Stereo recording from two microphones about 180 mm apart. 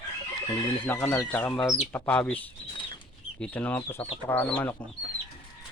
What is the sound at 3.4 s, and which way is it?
Speech, 10° left (ahead or behind).